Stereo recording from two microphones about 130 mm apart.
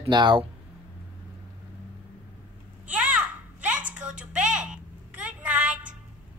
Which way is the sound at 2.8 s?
10° right (ahead or behind).